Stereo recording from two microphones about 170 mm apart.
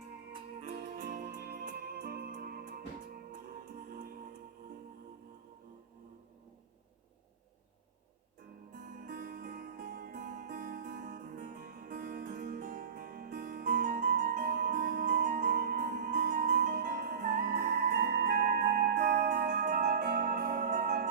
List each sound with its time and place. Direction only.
0.9 s music: 60° right (ahead or behind)
3.8 s music: 60° right (ahead or behind)
8.7 s music: 60° right (ahead or behind)
14.1 s music: 75° right (ahead or behind)
16.4 s music: 60° right (ahead or behind)